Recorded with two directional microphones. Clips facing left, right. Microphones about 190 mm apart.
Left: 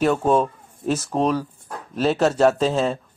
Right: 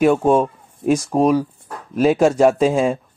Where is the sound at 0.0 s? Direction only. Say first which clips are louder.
Right 4 dB; 10° right (ahead or behind).